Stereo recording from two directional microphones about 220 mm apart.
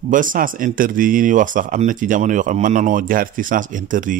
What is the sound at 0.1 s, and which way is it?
Speech, 40° right (ahead or behind).